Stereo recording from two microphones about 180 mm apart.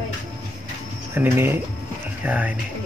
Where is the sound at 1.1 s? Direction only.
15° right (ahead or behind).